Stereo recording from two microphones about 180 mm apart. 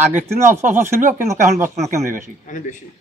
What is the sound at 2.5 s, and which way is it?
Speech, 40° left (ahead or behind).